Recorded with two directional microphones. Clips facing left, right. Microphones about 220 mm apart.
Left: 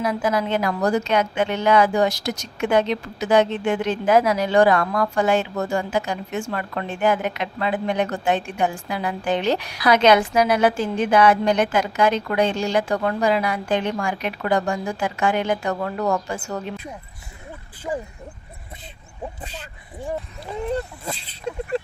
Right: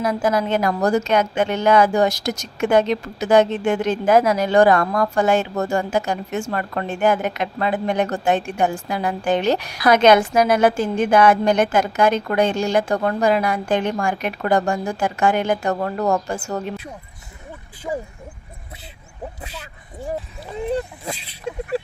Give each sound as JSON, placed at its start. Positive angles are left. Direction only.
{"t": 0.0, "sound": "a woman's voice", "side_deg": -45}
{"t": 21.0, "sound": "speech", "side_deg": -10}